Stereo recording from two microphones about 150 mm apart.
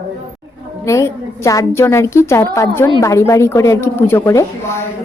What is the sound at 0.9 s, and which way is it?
A woman's voice, 20° left (ahead or behind).